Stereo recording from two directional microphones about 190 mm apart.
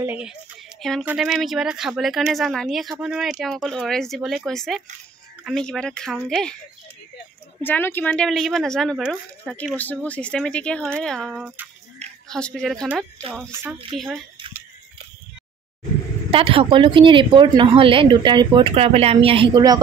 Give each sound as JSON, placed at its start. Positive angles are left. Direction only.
{"t": 0.0, "sound": "a woman's voice", "side_deg": -10}
{"t": 7.6, "sound": "speech", "side_deg": 10}
{"t": 11.4, "sound": "speech", "side_deg": -10}
{"t": 12.3, "sound": "speech", "side_deg": 5}
{"t": 13.9, "sound": "speech", "side_deg": 0}
{"t": 16.3, "sound": "speech", "side_deg": -30}